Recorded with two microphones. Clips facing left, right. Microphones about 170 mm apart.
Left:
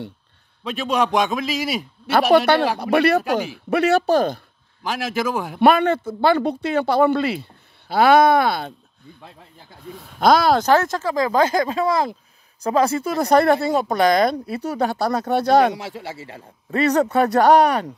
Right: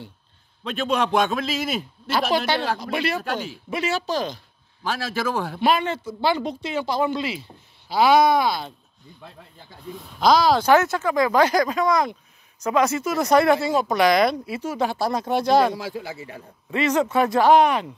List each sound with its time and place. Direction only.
0.7 s a man's voice: 10° left (ahead or behind)
2.3 s speech: 60° left (ahead or behind)
4.8 s a man's voice: 15° left (ahead or behind)
5.6 s speech: 60° left (ahead or behind)
10.1 s speech: 55° left (ahead or behind)
10.7 s speech: 35° left (ahead or behind)
13.6 s speech: 55° left (ahead or behind); by 14.9 s 35° left (ahead or behind)
15.6 s speech: 70° left (ahead or behind)
16.3 s speech: 35° left (ahead or behind)